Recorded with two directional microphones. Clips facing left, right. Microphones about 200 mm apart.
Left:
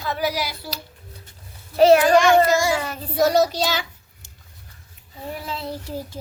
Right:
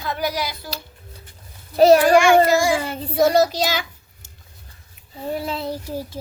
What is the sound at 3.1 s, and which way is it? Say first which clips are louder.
Child singing: right 2 dB; 10° right (ahead or behind).